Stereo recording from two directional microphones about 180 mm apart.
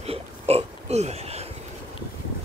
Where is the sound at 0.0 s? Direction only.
35° right (ahead or behind).